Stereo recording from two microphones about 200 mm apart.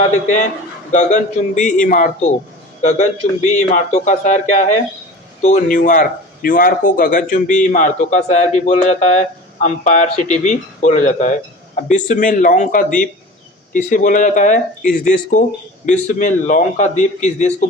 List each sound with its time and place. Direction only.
0.9 s speech: 35° left (ahead or behind)